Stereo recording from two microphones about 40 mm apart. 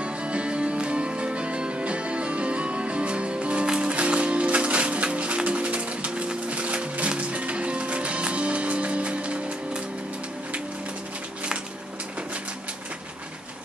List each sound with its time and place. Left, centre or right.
0.0 s music: right